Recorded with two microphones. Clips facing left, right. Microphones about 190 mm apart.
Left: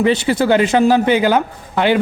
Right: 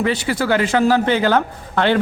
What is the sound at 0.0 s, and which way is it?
A man's voice, 20° left (ahead or behind).